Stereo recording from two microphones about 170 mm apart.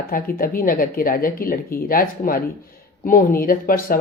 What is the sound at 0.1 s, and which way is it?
A woman's voice, 60° left (ahead or behind).